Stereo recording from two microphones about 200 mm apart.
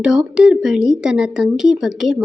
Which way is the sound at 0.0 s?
5° right (ahead or behind).